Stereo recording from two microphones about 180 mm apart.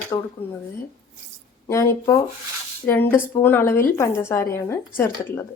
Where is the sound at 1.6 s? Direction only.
15° left (ahead or behind).